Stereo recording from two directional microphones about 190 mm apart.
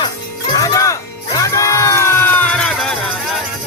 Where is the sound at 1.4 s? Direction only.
15° left (ahead or behind).